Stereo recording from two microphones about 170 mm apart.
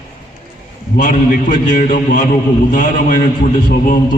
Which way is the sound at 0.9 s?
50° left (ahead or behind).